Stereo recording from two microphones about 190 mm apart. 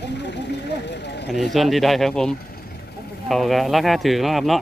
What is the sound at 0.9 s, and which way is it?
Speech, 65° left (ahead or behind).